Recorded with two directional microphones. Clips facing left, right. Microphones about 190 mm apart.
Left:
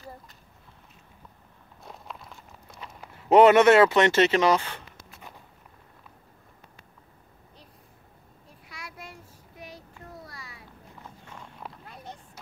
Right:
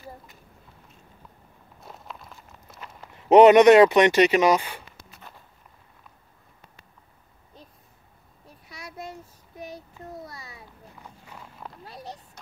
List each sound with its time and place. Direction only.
1.8 s walk: centre (ahead or behind)
3.3 s speech: 20° right (ahead or behind)
8.6 s child singing: 20° right (ahead or behind)
10.2 s a sound: 20° right (ahead or behind)
11.2 s walk: 5° right (ahead or behind)
11.8 s a sound: 35° right (ahead or behind)